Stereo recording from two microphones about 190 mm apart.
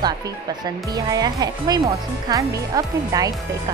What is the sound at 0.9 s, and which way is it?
Speech, 20° right (ahead or behind).